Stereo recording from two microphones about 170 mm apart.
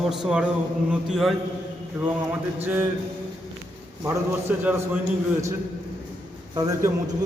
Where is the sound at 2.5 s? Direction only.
10° right (ahead or behind).